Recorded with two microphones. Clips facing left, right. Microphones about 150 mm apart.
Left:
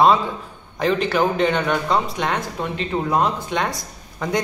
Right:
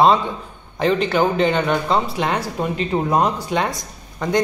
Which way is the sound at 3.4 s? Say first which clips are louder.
Right 2 dB; centre (ahead or behind).